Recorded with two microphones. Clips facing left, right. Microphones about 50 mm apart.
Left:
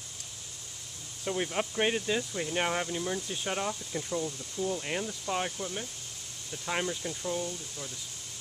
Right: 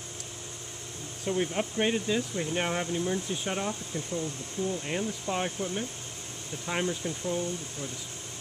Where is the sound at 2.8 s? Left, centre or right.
Centre.